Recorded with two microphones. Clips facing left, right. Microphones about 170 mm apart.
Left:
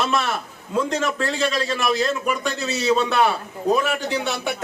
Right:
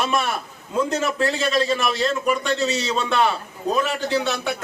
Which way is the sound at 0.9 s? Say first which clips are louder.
Right 1 dB; 5° right (ahead or behind).